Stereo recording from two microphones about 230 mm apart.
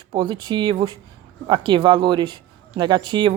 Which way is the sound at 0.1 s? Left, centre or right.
Centre.